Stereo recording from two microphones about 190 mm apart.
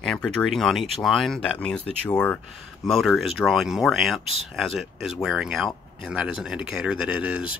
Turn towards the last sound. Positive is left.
turn(degrees=-5)  # may be behind; listen again after turning